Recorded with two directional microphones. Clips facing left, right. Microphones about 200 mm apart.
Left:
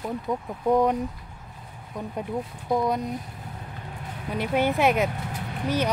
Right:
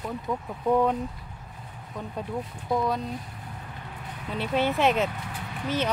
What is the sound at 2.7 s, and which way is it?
Speech, 20° left (ahead or behind).